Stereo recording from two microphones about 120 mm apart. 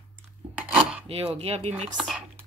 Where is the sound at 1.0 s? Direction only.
55° right (ahead or behind).